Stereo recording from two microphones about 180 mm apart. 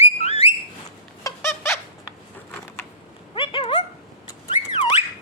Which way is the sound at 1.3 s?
20° left (ahead or behind).